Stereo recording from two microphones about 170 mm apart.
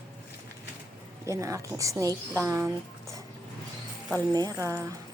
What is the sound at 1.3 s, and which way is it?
Speech, 20° right (ahead or behind).